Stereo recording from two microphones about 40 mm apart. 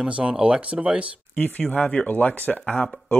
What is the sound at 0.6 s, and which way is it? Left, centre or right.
Speech, right.